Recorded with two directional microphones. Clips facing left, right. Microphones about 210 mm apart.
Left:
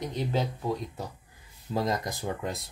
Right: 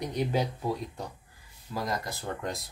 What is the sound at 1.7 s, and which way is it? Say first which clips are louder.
Speech: left 4 dB; 25° left (ahead or behind).